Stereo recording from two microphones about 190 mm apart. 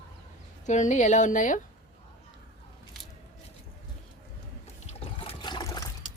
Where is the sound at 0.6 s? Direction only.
40° left (ahead or behind).